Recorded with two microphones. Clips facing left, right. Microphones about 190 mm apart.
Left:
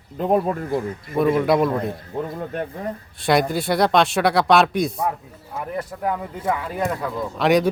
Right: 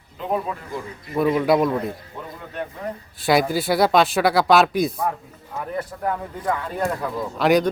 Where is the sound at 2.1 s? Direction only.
50° left (ahead or behind).